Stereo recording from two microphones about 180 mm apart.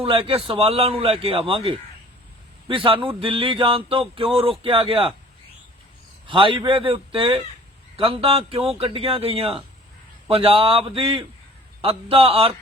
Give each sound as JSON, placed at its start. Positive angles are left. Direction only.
{"t": 0.0, "sound": "a man's voice", "side_deg": -30}
{"t": 6.2, "sound": "a man's voice", "side_deg": -30}